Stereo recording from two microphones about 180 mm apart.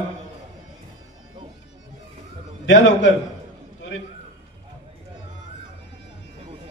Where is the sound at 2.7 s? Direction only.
90° left.